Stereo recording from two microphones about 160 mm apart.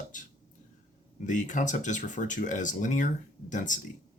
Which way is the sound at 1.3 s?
50° left (ahead or behind).